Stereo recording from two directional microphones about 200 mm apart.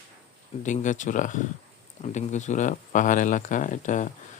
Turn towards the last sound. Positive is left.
turn(degrees=40)  # may be behind; listen again after turning